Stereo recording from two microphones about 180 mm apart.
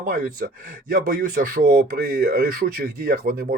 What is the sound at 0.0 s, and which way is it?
Speech, 50° right (ahead or behind).